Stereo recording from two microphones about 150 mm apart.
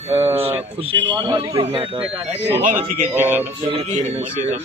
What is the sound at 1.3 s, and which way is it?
Speech, 40° right (ahead or behind).